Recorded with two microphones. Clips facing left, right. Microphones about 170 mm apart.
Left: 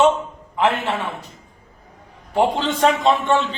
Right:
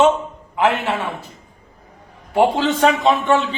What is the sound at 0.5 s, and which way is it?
Speech, 10° right (ahead or behind).